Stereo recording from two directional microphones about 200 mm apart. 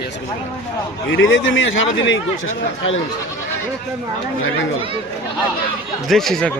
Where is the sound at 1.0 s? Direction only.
70° left (ahead or behind).